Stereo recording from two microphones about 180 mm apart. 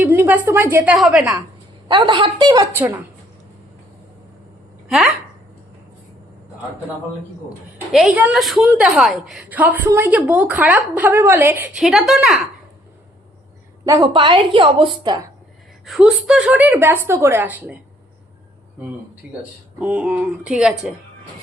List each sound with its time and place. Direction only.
0.0 s a woman's voice: 10° right (ahead or behind)
1.9 s a woman's voice: 25° right (ahead or behind)
4.9 s a woman's voice: centre (ahead or behind)
7.9 s a woman's voice: 5° right (ahead or behind)
13.8 s a woman's voice: 20° right (ahead or behind)
15.9 s a woman's voice: centre (ahead or behind)
19.8 s a woman's voice: 10° right (ahead or behind)